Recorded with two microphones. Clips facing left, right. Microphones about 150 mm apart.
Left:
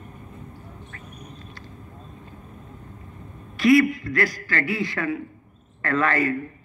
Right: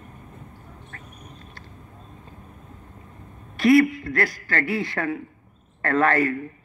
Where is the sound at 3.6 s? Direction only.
55° right (ahead or behind).